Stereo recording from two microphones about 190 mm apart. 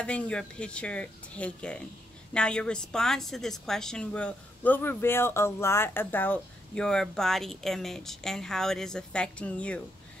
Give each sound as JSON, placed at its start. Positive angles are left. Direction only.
{"t": 0.0, "sound": "a woman's voice", "side_deg": 5}